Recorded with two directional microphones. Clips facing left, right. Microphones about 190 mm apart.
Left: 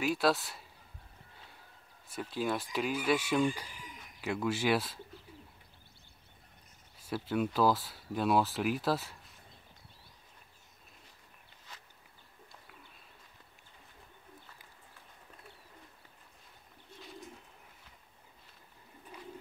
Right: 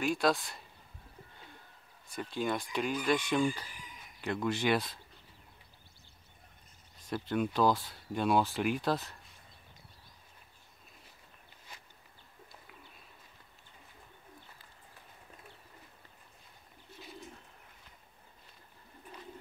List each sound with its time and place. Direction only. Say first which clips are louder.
0.0 s speech: even; 5° left (ahead or behind)
2.0 s speech: even; 5° left (ahead or behind)
7.0 s speech: even; 5° left (ahead or behind)
11.7 s a sound: even; 10° right (ahead or behind)